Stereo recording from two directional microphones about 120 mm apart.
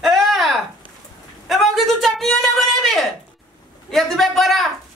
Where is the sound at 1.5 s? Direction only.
Centre (ahead or behind).